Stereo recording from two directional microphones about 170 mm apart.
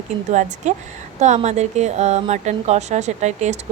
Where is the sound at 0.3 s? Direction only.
45° right (ahead or behind).